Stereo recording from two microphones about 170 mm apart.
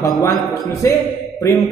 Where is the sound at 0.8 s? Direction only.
15° left (ahead or behind).